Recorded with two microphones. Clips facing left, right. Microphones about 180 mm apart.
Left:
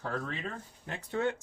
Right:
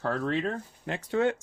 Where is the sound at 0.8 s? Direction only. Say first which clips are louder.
Right 6 dB; 90° right.